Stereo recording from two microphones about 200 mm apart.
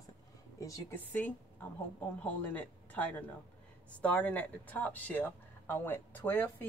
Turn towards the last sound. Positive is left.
turn(degrees=10)  # may be behind; listen again after turning